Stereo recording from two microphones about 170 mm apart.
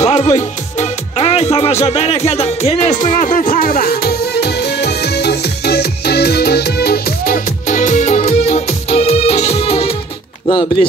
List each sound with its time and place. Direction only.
0.0 s music: 40° left (ahead or behind)
10.5 s speech: 25° left (ahead or behind)